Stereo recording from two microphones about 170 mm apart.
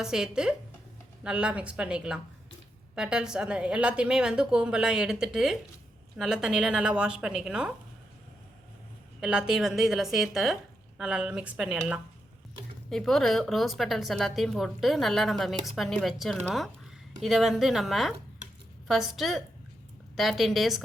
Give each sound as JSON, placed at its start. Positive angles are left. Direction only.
{"t": 0.0, "sound": "speech", "side_deg": -5}
{"t": 9.2, "sound": "speech", "side_deg": -5}